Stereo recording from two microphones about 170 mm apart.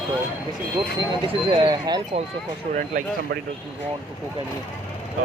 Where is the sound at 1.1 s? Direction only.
30° right (ahead or behind).